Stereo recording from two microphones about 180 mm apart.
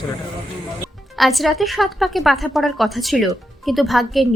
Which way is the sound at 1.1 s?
Centre (ahead or behind).